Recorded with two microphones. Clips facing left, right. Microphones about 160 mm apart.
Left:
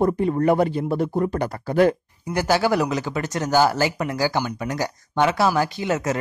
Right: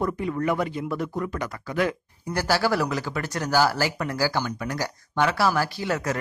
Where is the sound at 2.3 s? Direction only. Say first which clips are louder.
Left 3 dB; 20° left (ahead or behind).